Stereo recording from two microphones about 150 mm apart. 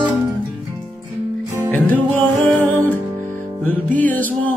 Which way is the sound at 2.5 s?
10° left (ahead or behind).